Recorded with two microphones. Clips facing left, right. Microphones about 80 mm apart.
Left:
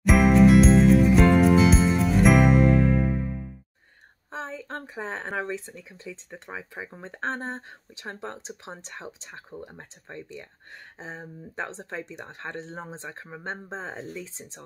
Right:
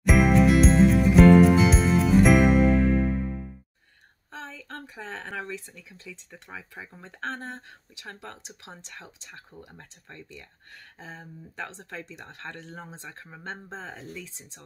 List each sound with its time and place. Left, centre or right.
0.0 s music: centre
4.3 s a sound: left
5.4 s speech: left